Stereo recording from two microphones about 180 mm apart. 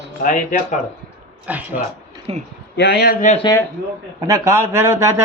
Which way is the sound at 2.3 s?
35° right (ahead or behind).